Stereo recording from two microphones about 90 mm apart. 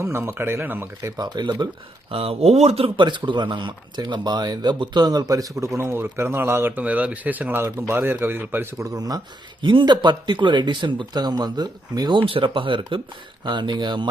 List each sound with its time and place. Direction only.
0.0 s speech: 30° right (ahead or behind)
1.1 s speech: 50° right (ahead or behind)
2.0 s speech: 90° right; by 8.6 s 25° right (ahead or behind)
8.8 s speech: 45° right (ahead or behind)
12.2 s speech: 75° right (ahead or behind)
13.4 s speech: 60° right (ahead or behind)